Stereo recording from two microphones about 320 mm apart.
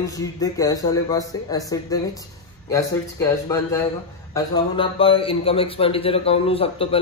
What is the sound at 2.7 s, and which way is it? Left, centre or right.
A man's voice, centre.